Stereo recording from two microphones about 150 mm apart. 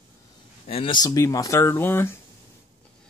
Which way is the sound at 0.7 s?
35° left (ahead or behind).